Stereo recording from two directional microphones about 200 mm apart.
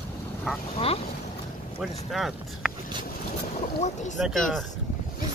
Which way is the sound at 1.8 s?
Centre (ahead or behind).